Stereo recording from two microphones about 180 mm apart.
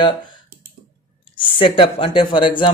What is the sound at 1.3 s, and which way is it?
Speech, 30° left (ahead or behind).